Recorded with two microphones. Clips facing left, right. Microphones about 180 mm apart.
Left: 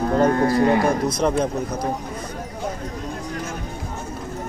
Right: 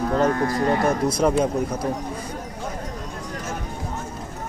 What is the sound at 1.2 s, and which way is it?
Speech, 5° right (ahead or behind).